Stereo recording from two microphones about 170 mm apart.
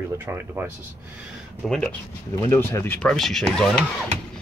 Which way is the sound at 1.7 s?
5° left (ahead or behind).